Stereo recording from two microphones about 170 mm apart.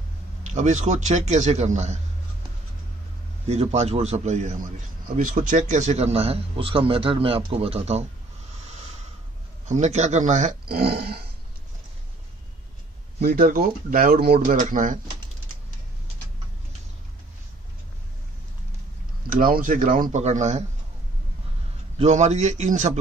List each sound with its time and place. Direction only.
0.4 s a man's voice: 45° right (ahead or behind)
3.4 s a man's voice: 40° right (ahead or behind)
9.7 s a man's voice: 40° right (ahead or behind)
10.7 s speech: 65° right (ahead or behind)
13.2 s speech: 65° right (ahead or behind)
14.4 s a man's voice: 50° right (ahead or behind)
19.2 s a man's voice: 55° right (ahead or behind)
21.9 s a man's voice: 40° right (ahead or behind)